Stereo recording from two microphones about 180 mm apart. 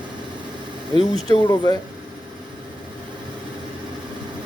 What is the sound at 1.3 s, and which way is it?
Speech, 20° left (ahead or behind).